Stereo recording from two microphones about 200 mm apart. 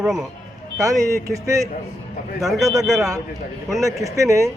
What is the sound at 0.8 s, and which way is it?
Speech, 15° right (ahead or behind).